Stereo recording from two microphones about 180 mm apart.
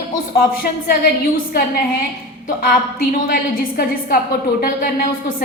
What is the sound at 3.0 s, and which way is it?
A woman's voice, 55° left (ahead or behind).